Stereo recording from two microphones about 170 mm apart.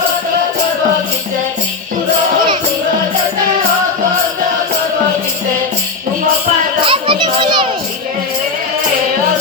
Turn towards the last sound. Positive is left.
turn(degrees=-25)  # may be behind; listen again after turning